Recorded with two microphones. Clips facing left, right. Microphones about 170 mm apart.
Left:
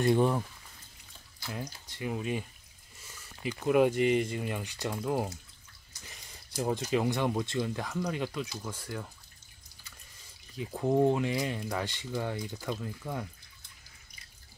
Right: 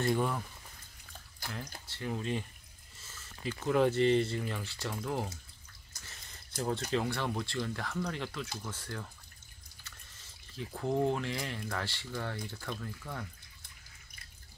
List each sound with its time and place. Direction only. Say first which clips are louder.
0.0 s speech: left 5 dB; 20° left (ahead or behind)
1.9 s speech: left 2 dB; 10° left (ahead or behind)
6.0 s a sound: left 3 dB; 15° left (ahead or behind)
6.9 s speech: left 4 dB; 15° left (ahead or behind)